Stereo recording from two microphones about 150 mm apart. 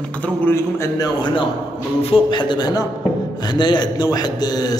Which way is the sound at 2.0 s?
35° left (ahead or behind).